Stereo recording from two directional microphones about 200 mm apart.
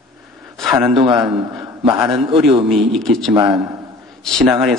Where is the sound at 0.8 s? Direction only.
20° right (ahead or behind).